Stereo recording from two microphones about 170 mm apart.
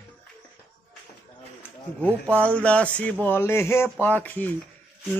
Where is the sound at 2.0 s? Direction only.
5° left (ahead or behind).